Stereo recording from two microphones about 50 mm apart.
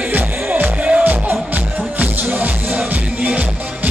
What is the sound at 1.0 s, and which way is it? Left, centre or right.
Music, right.